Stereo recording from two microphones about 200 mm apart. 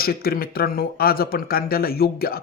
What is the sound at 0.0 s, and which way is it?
Speech, 50° left (ahead or behind).